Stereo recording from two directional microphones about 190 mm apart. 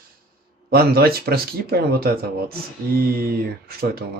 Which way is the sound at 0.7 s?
55° right (ahead or behind).